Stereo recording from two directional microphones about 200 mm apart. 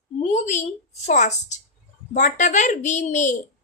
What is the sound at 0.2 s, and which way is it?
A woman's voice, 35° left (ahead or behind).